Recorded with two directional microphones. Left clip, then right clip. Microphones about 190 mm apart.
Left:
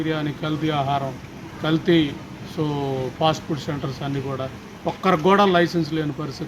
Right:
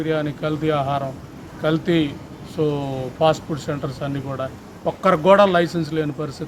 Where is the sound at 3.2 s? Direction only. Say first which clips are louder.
Right 5 dB; 15° right (ahead or behind).